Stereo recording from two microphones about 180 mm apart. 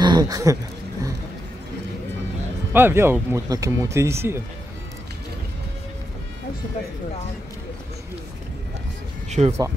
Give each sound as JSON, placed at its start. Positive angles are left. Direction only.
{"t": 0.0, "sound": "speech", "side_deg": -25}
{"t": 2.7, "sound": "speech", "side_deg": -10}
{"t": 9.3, "sound": "speech", "side_deg": -40}